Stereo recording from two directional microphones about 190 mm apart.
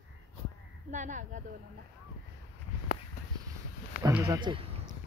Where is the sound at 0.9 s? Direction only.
40° right (ahead or behind).